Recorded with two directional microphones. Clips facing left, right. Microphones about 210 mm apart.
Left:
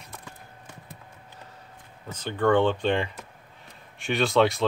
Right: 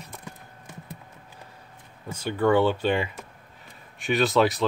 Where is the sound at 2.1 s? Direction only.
10° right (ahead or behind).